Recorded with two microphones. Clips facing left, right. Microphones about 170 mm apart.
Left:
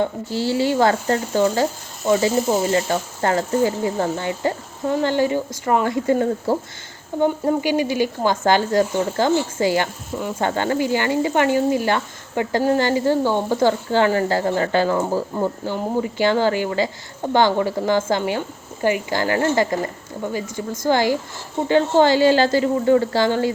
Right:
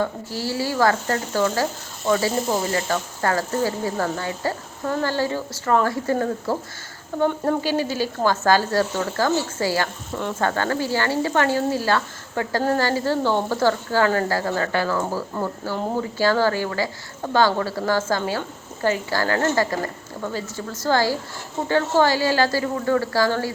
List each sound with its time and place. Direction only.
0.0 s speech: 25° left (ahead or behind)
2.7 s speech: 25° left (ahead or behind)